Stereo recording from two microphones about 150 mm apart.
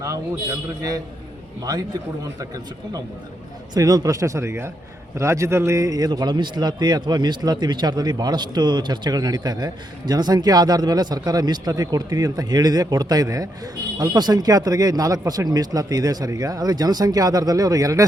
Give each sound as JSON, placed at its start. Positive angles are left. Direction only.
{"t": 0.8, "sound": "a man's voice", "side_deg": -25}
{"t": 3.8, "sound": "a man's voice", "side_deg": -25}